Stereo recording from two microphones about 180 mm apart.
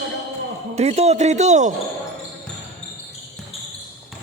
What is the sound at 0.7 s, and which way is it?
Speech, 35° right (ahead or behind).